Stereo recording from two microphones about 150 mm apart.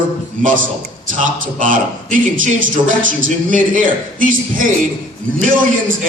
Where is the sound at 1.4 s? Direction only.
60° right (ahead or behind).